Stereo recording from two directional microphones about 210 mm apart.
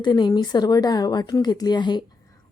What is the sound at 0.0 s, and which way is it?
A woman's voice, 20° left (ahead or behind).